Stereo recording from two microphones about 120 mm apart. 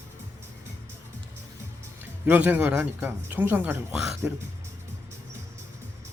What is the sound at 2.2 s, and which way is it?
Speech, 15° right (ahead or behind).